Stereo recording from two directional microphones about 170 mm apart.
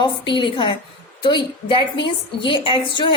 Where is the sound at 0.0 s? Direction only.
30° left (ahead or behind).